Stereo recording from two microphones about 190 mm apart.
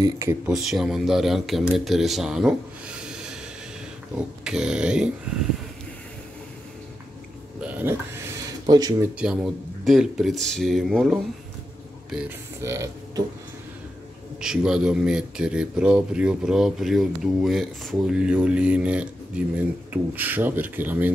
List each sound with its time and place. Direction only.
0.0 s speech: 15° right (ahead or behind)
0.5 s speech: centre (ahead or behind)
4.5 s speech: 5° right (ahead or behind)
7.6 s a sound: 10° right (ahead or behind)
9.2 s speech: 5° right (ahead or behind)
12.6 s speech: 15° right (ahead or behind)
14.4 s speech: 5° right (ahead or behind)